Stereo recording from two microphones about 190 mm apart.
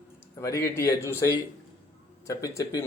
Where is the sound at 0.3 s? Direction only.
15° left (ahead or behind).